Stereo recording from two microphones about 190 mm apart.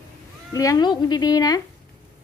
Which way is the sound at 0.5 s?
20° left (ahead or behind).